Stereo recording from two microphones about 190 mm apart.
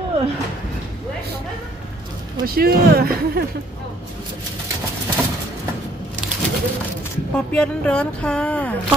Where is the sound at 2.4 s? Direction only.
50° right (ahead or behind).